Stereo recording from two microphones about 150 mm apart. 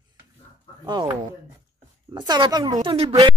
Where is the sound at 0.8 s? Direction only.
25° right (ahead or behind).